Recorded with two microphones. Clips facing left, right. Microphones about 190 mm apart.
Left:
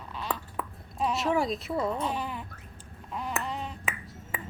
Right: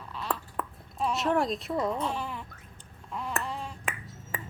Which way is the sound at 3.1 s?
Centre (ahead or behind).